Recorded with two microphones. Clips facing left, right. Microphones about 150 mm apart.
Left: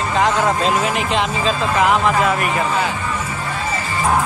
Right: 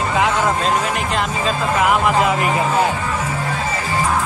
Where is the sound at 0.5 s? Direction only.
Centre (ahead or behind).